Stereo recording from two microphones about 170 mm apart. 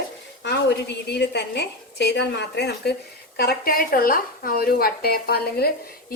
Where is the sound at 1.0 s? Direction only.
75° left (ahead or behind).